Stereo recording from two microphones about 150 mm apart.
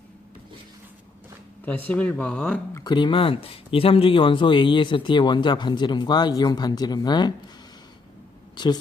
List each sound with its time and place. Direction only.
1.6 s speech: 10° left (ahead or behind)
2.7 s speech: 30° left (ahead or behind)
8.5 s speech: 30° left (ahead or behind)